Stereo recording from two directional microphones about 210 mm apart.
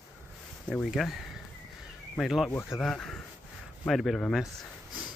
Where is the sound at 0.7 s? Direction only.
Centre (ahead or behind).